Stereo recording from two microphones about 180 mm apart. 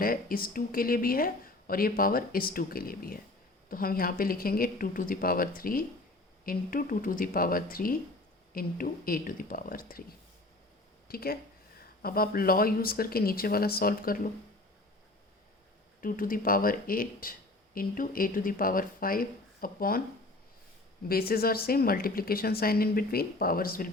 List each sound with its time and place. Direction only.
0.0 s speech: 55° left (ahead or behind)
11.1 s a woman's voice: 55° left (ahead or behind)
16.0 s speech: 50° left (ahead or behind)
21.1 s a woman's voice: 55° left (ahead or behind)